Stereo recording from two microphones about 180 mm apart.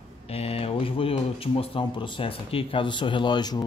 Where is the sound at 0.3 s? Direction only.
35° left (ahead or behind).